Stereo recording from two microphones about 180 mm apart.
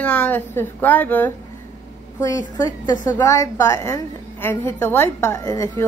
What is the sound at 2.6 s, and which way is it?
A woman's voice, 20° left (ahead or behind).